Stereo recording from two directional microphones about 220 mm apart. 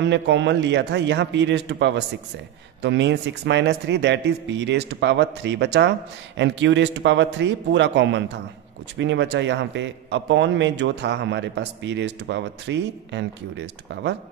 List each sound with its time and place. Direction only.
0.0 s a man's voice: 55° right (ahead or behind)